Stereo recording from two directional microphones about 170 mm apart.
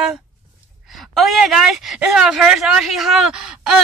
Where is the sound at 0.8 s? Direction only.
Centre (ahead or behind).